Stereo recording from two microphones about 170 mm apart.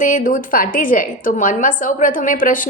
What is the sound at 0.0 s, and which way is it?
A woman's voice, 50° left (ahead or behind).